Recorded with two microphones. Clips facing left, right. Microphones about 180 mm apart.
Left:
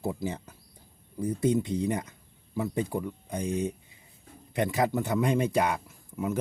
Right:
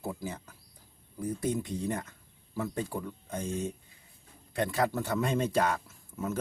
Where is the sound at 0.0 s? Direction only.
20° left (ahead or behind).